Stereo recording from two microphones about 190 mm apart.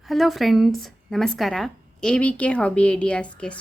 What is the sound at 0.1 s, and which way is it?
Speech, centre (ahead or behind).